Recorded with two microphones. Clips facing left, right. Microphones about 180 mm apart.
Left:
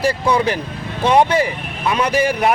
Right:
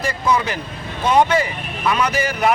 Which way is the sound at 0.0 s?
30° left (ahead or behind).